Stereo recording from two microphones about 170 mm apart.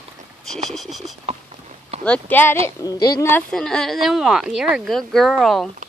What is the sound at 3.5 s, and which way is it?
A woman's voice, 5° left (ahead or behind).